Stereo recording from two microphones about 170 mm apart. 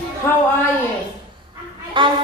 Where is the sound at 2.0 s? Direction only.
30° right (ahead or behind).